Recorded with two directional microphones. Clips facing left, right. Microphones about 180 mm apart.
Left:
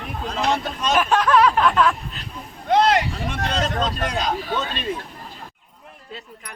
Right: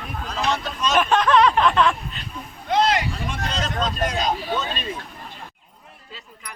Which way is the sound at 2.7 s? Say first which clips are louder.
Left 3 dB; 60° left (ahead or behind).